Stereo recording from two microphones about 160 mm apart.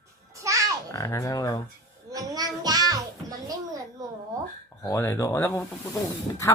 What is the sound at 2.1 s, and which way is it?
Child singing, 25° right (ahead or behind).